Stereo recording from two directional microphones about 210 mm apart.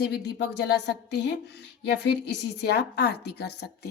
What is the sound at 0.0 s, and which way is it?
A woman's voice, 55° left (ahead or behind).